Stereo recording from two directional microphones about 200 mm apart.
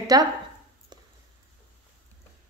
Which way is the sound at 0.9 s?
20° right (ahead or behind).